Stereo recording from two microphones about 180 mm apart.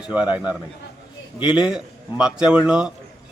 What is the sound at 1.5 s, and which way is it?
A man's voice, 5° right (ahead or behind).